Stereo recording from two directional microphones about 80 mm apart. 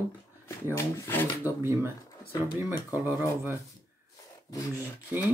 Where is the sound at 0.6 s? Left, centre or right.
Left.